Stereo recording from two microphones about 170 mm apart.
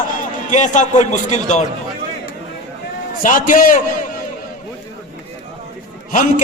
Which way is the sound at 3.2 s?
50° left (ahead or behind).